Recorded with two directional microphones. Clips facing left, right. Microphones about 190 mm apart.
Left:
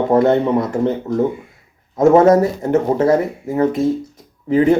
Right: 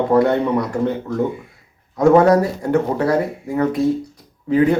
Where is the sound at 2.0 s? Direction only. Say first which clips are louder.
Left 2 dB; 20° left (ahead or behind).